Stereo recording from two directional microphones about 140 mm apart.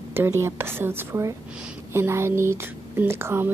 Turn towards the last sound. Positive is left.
turn(degrees=-15)  # may be behind; listen again after turning